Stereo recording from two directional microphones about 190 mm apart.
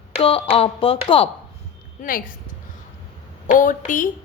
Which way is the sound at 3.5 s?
40° left (ahead or behind).